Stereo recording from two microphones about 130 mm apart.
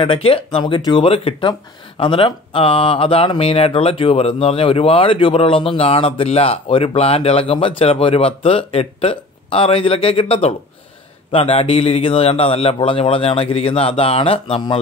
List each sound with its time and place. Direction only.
0.0 s speech: 40° left (ahead or behind)